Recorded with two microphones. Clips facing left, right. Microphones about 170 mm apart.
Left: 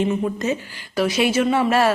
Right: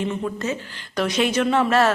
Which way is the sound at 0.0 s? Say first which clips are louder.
Left 4 dB; 15° left (ahead or behind).